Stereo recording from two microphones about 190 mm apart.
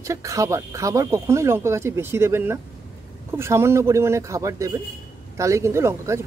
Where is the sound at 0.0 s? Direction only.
15° right (ahead or behind).